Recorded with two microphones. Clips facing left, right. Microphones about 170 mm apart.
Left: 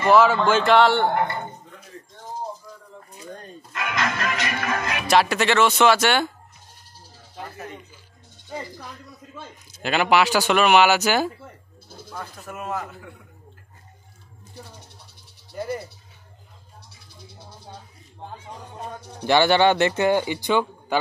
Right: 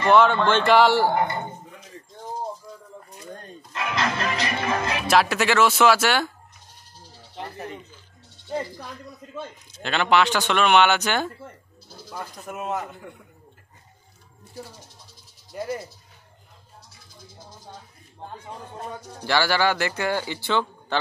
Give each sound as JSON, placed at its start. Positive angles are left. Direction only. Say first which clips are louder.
{"t": 0.0, "sound": "speech", "louder": "left 1 dB", "side_deg": 5}
{"t": 3.7, "sound": "speech", "louder": "even", "side_deg": -30}
{"t": 5.0, "sound": "speech", "louder": "left 2 dB", "side_deg": 0}
{"t": 9.8, "sound": "speech", "louder": "left 1 dB", "side_deg": 5}
{"t": 12.1, "sound": "speech", "louder": "right 1 dB", "side_deg": -5}
{"t": 15.5, "sound": "speech", "louder": "left 1 dB", "side_deg": 0}
{"t": 19.2, "sound": "a man's voice", "louder": "left 5 dB", "side_deg": 20}